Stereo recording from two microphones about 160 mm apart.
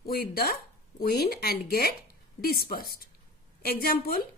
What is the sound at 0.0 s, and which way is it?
A woman's voice, 75° left (ahead or behind).